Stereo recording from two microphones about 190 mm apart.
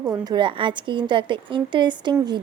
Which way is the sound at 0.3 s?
25° right (ahead or behind).